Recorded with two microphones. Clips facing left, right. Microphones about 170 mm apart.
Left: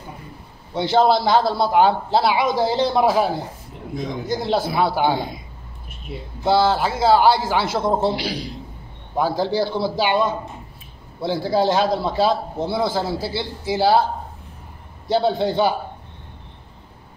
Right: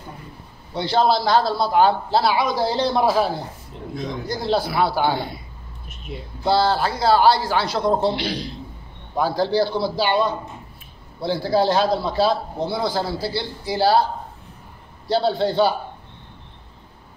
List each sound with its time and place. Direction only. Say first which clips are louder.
0.7 s a man's voice: left 2 dB; 20° left (ahead or behind)
6.1 s speech: left 1 dB; 5° left (ahead or behind)
6.4 s a man's voice: left 1 dB; 20° left (ahead or behind)
8.1 s a man's voice: even; 5° left (ahead or behind)
9.1 s a man's voice: even; 20° left (ahead or behind)
15.0 s a man's voice: left 1 dB; 15° left (ahead or behind)